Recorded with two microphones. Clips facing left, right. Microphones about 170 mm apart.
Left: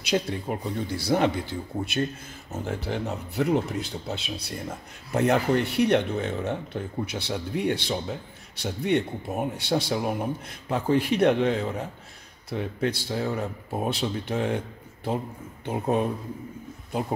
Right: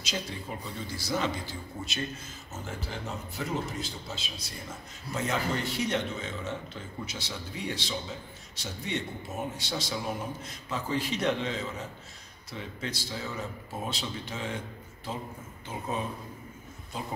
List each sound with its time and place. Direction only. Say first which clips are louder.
0.0 s speech: left 10 dB; 60° left (ahead or behind)
15.6 s speech: left 9 dB; 60° left (ahead or behind)